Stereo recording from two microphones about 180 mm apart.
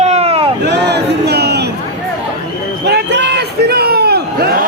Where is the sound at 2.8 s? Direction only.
70° right (ahead or behind).